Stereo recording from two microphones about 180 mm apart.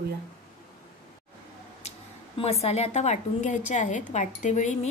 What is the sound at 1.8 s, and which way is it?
Speech, 35° left (ahead or behind).